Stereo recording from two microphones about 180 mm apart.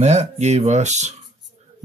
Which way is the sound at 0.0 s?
40° right (ahead or behind).